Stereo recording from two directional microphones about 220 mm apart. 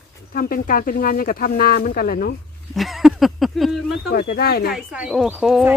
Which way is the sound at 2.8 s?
Centre (ahead or behind).